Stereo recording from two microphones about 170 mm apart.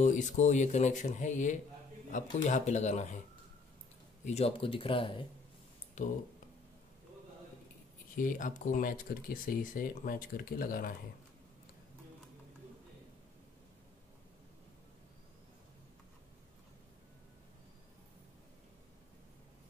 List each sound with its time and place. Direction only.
0.0 s speech: 45° left (ahead or behind)
4.3 s speech: 35° left (ahead or behind)
6.0 s speech: 50° left (ahead or behind)
8.2 s speech: 50° left (ahead or behind)